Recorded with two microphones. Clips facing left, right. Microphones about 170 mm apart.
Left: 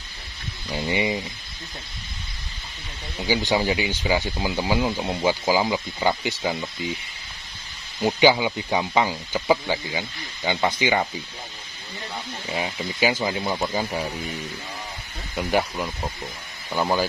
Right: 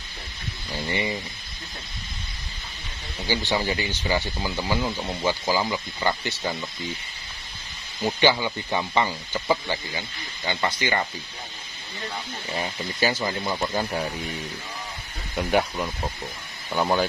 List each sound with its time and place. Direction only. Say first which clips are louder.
0.7 s speech: left 4 dB; 15° left (ahead or behind)
3.2 s speech: left 3 dB; 15° left (ahead or behind)
8.0 s speech: left 3 dB; 15° left (ahead or behind)
12.4 s speech: left 2 dB; 10° left (ahead or behind)